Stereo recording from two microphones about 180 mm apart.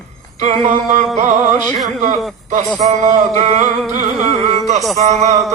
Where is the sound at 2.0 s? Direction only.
45° right (ahead or behind).